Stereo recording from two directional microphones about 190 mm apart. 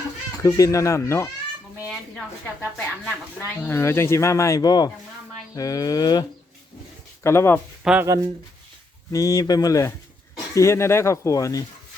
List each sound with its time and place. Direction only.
0.4 s speech: 15° left (ahead or behind)
2.6 s speech: 10° left (ahead or behind)
8.0 s speech: 15° right (ahead or behind)
9.1 s speech: 20° left (ahead or behind)